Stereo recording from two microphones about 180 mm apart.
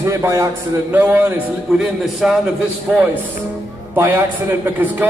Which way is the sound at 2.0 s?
5° right (ahead or behind).